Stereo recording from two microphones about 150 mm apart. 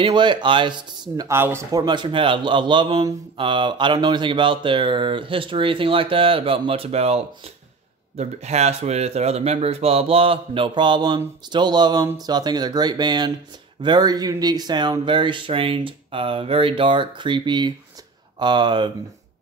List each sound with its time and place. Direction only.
0.0 s speech: 30° right (ahead or behind)